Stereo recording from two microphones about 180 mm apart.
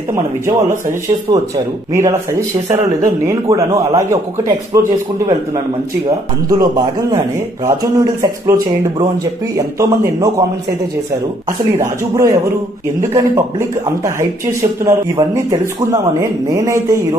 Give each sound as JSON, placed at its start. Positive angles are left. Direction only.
{"t": 0.1, "sound": "a man's voice", "side_deg": -20}
{"t": 12.0, "sound": "speech", "side_deg": -15}